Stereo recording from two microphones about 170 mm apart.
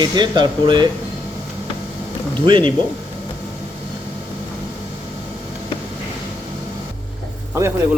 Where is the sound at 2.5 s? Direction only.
30° right (ahead or behind).